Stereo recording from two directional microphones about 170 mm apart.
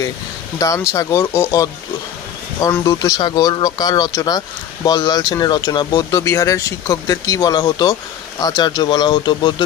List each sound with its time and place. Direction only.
0.6 s speech: 20° left (ahead or behind)
2.8 s speech: 20° left (ahead or behind)